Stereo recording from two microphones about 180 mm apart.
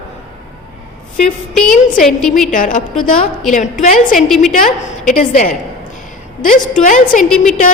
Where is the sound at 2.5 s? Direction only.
50° left (ahead or behind).